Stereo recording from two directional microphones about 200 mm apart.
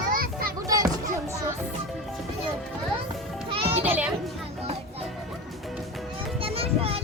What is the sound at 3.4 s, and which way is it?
Music, 30° right (ahead or behind).